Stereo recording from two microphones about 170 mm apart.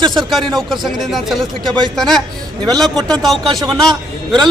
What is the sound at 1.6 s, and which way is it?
Speech, 25° right (ahead or behind).